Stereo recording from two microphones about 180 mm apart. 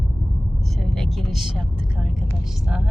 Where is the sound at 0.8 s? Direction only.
Centre (ahead or behind).